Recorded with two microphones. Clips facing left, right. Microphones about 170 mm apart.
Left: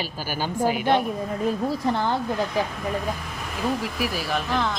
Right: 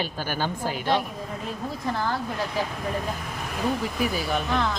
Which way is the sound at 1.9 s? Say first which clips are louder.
Left 3 dB; 25° left (ahead or behind).